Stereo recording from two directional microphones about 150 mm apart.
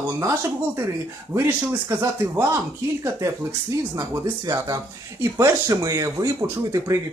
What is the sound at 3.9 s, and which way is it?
Speech, 25° right (ahead or behind).